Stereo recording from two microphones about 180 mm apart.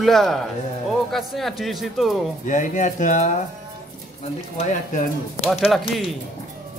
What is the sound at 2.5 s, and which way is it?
Speech, 45° left (ahead or behind).